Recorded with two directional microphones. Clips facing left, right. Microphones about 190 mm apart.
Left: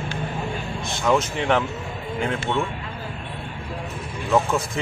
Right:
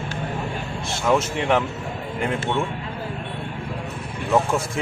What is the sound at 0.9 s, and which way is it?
Speech, 5° right (ahead or behind).